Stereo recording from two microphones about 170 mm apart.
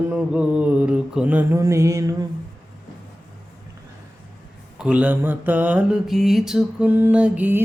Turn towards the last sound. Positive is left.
turn(degrees=-10)  # may be behind; listen again after turning